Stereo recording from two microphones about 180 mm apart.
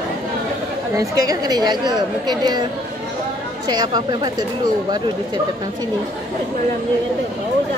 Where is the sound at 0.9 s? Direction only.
20° right (ahead or behind).